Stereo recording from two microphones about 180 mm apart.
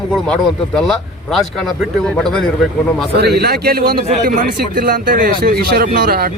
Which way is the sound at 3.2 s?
65° right (ahead or behind).